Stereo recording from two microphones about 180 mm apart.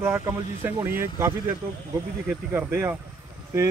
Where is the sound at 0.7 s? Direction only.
10° right (ahead or behind).